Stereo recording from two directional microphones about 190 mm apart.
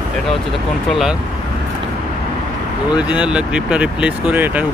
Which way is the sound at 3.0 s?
5° right (ahead or behind).